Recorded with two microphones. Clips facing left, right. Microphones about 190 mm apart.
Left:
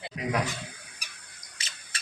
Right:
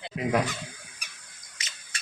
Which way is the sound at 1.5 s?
30° left (ahead or behind).